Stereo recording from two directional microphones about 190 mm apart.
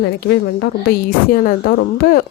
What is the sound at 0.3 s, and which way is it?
A woman's voice, 60° left (ahead or behind).